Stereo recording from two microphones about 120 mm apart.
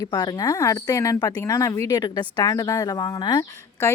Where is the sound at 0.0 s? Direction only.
35° left (ahead or behind).